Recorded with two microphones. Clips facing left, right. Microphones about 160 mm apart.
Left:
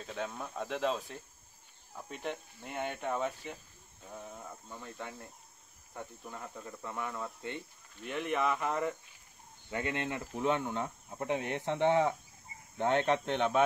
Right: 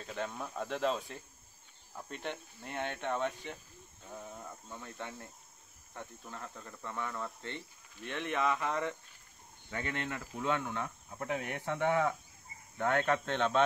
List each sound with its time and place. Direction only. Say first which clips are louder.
0.0 s speech: even; centre (ahead or behind)
9.7 s speech: left 3 dB; 15° left (ahead or behind)